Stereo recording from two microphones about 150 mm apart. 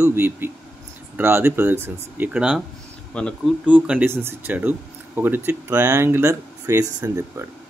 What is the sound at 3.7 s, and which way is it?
Speech, 10° right (ahead or behind).